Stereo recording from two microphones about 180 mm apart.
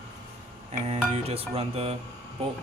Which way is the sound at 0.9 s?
35° right (ahead or behind).